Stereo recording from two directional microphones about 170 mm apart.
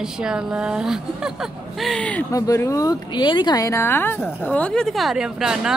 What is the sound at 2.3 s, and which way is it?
Speech, 20° left (ahead or behind).